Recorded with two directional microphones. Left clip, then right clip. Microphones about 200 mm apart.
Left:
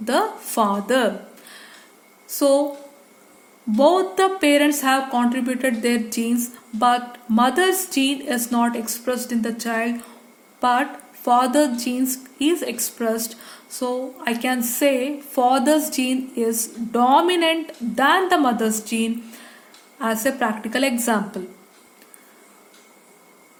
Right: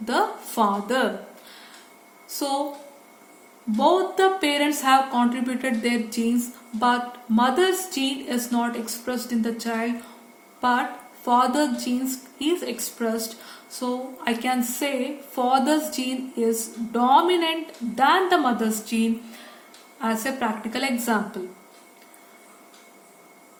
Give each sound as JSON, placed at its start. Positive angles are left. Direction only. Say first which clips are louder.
{"t": 0.0, "sound": "a woman's voice", "louder": "left 3 dB", "side_deg": 45}
{"t": 3.8, "sound": "a woman's voice", "louder": "left 3 dB", "side_deg": 50}